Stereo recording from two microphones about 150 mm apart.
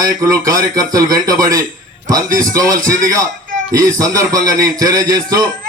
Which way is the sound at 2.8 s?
65° right (ahead or behind).